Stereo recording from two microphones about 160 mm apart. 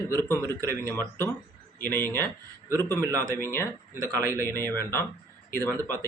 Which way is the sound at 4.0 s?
20° right (ahead or behind).